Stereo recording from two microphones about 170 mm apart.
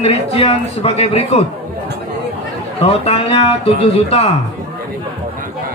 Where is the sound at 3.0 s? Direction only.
35° left (ahead or behind).